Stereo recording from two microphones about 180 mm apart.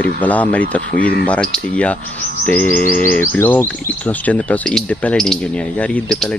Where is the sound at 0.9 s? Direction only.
55° left (ahead or behind).